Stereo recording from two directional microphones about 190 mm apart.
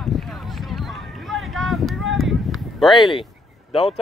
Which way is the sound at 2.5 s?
Centre (ahead or behind).